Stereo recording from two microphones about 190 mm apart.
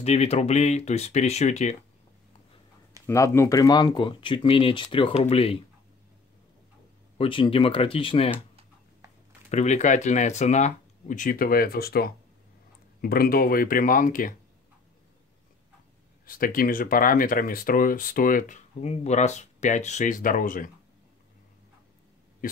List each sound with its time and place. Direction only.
0.0 s speech: 35° left (ahead or behind)
3.1 s speech: 15° left (ahead or behind); by 5.6 s 30° left (ahead or behind)
7.2 s speech: 25° left (ahead or behind)
9.5 s speech: 35° left (ahead or behind)
16.3 s speech: 50° left (ahead or behind)
22.4 s speech: 45° left (ahead or behind)